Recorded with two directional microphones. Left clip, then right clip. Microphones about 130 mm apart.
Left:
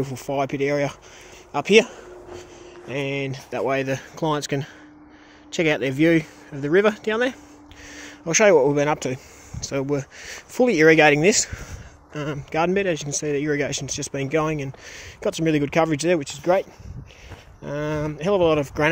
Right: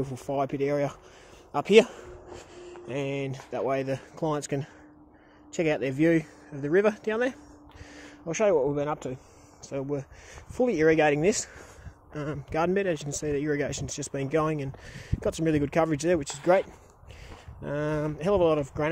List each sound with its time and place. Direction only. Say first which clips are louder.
0.0 s speech: left 5 dB; 20° left (ahead or behind)
1.9 s a sound: left 4 dB; 5° left (ahead or behind)
2.9 s speech: left 5 dB; 15° left (ahead or behind)
8.3 s speech: left 8 dB; 60° left (ahead or behind); by 9.2 s 75° left (ahead or behind)
9.6 s speech: left 8 dB; 55° left (ahead or behind); by 11.6 s 35° left (ahead or behind)
12.1 s speech: left 5 dB; 25° left (ahead or behind)
16.3 s speech: left 3 dB; 5° left (ahead or behind)
17.6 s speech: left 3 dB; 10° left (ahead or behind)